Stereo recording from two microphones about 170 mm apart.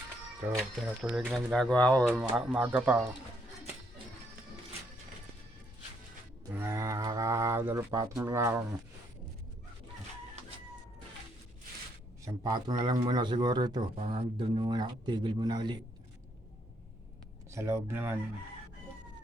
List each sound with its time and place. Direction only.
0.6 s speech: 5° right (ahead or behind)
2.3 s speech: 10° right (ahead or behind)
6.5 s speech: 15° right (ahead or behind)
12.2 s speech: 20° right (ahead or behind)
17.5 s speech: 15° right (ahead or behind)